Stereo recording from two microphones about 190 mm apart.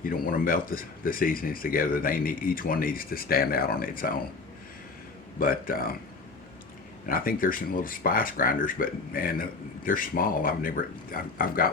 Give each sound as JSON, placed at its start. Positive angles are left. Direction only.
{"t": 0.0, "sound": "speech", "side_deg": 50}
{"t": 5.4, "sound": "speech", "side_deg": 50}
{"t": 7.1, "sound": "speech", "side_deg": 50}